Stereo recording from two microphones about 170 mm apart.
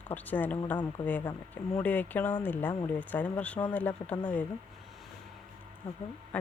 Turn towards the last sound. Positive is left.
turn(degrees=10)  # may be behind; listen again after turning